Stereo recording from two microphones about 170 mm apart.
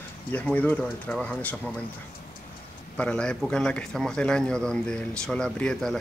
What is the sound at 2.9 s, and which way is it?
A man's voice, 5° left (ahead or behind).